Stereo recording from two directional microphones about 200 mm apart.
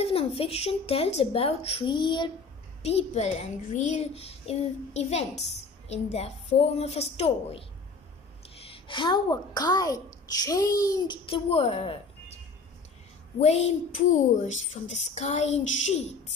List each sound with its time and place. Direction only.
0.0 s a woman's voice: 30° left (ahead or behind)
8.6 s a woman's voice: 25° left (ahead or behind)
13.4 s a child's voice: 30° left (ahead or behind)